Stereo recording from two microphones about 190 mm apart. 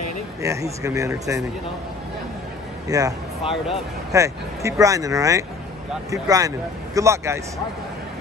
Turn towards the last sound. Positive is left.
turn(degrees=-15)  # may be behind; listen again after turning